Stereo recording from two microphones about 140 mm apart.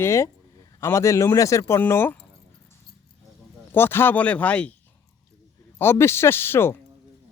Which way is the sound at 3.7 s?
15° left (ahead or behind).